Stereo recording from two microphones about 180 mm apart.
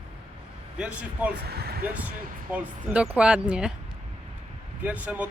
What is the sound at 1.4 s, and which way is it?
Speech, 60° right (ahead or behind).